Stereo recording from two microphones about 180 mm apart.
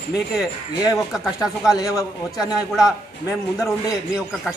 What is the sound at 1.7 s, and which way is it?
Speech, 20° left (ahead or behind).